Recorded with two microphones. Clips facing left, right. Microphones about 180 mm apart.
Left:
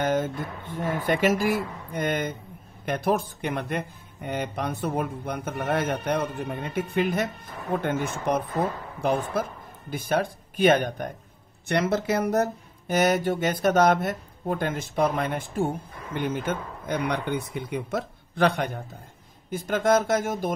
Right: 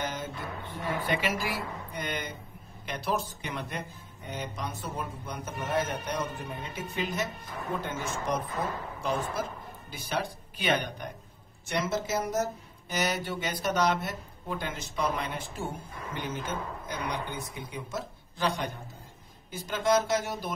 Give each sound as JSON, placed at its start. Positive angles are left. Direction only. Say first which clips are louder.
{"t": 0.0, "sound": "speech", "louder": "left 10 dB", "side_deg": 50}
{"t": 11.6, "sound": "speech", "louder": "left 6 dB", "side_deg": 65}